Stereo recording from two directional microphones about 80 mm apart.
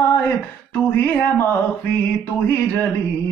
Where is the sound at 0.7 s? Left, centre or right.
Left.